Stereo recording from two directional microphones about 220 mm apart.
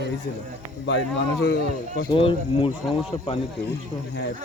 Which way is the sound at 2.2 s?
25° left (ahead or behind).